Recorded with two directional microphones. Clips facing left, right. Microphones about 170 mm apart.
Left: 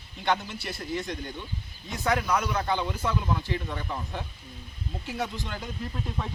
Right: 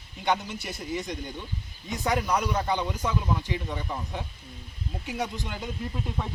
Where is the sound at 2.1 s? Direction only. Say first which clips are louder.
Even; 10° right (ahead or behind).